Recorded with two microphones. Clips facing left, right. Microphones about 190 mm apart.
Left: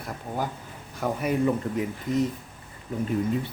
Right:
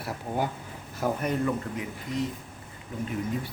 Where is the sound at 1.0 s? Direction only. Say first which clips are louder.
Left 1 dB; 5° left (ahead or behind).